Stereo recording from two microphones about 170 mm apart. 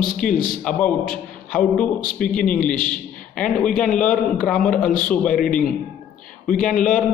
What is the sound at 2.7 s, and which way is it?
Speech, 55° left (ahead or behind).